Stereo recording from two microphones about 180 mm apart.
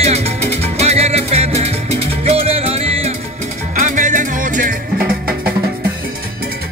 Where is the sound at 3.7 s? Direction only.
45° right (ahead or behind).